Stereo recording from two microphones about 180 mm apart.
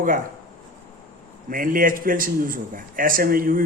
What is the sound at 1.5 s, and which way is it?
Speech, 50° right (ahead or behind).